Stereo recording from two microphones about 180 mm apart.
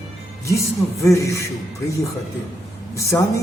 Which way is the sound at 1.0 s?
15° left (ahead or behind).